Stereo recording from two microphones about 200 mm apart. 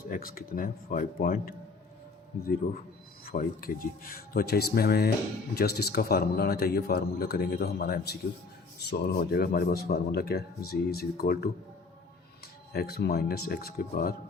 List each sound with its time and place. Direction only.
0.1 s a man's voice: 45° left (ahead or behind)
3.2 s a man's voice: 45° left (ahead or behind)
12.7 s a man's voice: 50° left (ahead or behind)